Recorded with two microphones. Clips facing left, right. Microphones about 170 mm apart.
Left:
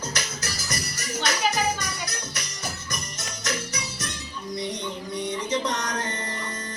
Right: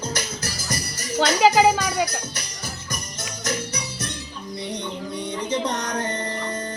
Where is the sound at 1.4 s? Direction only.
90° right.